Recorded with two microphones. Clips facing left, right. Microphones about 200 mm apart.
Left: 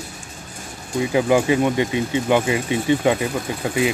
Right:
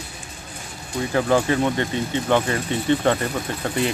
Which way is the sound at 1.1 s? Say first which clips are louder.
Left 2 dB; 10° left (ahead or behind).